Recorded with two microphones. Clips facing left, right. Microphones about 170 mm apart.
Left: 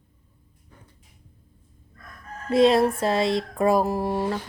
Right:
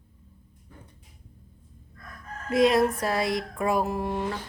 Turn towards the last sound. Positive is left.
turn(degrees=35)  # may be behind; listen again after turning